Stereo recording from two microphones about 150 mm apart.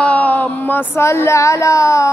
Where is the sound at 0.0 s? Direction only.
10° left (ahead or behind).